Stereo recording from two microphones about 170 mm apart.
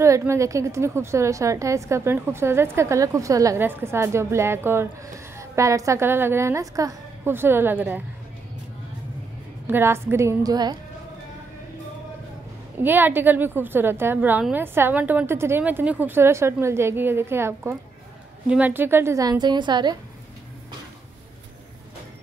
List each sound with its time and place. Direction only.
0.0 s a woman's voice: 15° right (ahead or behind)
9.7 s a woman's voice: 15° right (ahead or behind)
12.7 s a woman's voice: 10° right (ahead or behind)